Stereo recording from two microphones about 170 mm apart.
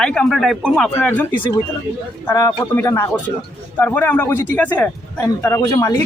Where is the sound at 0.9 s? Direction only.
10° left (ahead or behind).